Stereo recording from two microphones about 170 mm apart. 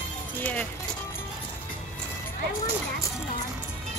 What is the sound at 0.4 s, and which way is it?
Music, 10° left (ahead or behind).